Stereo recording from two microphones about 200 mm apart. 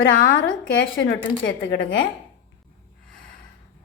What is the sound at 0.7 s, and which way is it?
A woman's voice, 70° left (ahead or behind).